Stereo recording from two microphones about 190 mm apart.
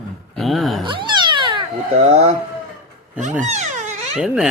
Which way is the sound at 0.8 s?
25° right (ahead or behind).